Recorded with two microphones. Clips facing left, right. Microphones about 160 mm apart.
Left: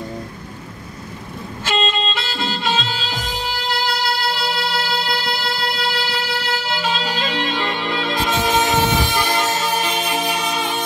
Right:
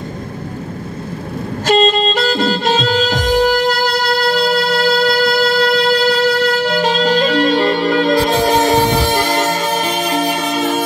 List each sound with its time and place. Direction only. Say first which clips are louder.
1.7 s music: right 9 dB; 45° right (ahead or behind)